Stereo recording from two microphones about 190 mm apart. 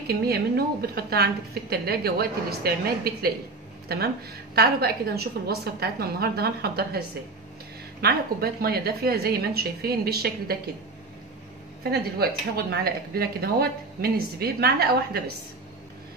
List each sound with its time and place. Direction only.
0.0 s speech: 55° right (ahead or behind)
8.0 s speech: 55° right (ahead or behind)
11.8 s speech: 55° right (ahead or behind)